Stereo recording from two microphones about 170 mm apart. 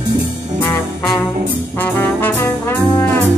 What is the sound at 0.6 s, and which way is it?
Brass instrument, 15° left (ahead or behind).